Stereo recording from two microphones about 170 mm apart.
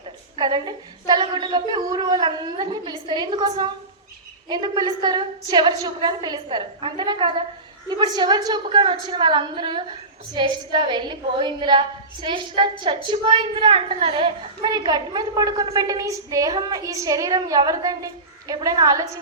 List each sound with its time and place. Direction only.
0.3 s a woman's voice: 25° right (ahead or behind)
14.6 s a woman's voice: 25° right (ahead or behind)